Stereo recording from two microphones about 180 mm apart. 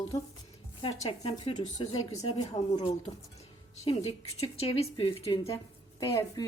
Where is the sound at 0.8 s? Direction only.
30° left (ahead or behind).